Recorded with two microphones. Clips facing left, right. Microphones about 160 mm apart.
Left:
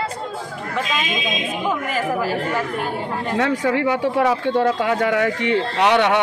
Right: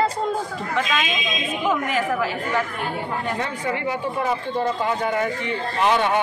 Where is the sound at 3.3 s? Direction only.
90° left.